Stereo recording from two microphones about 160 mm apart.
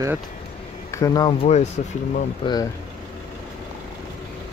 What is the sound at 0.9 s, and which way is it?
Speech, 20° left (ahead or behind).